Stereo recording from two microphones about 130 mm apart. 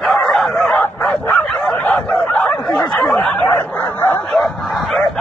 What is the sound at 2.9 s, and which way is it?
Snicker, 5° left (ahead or behind).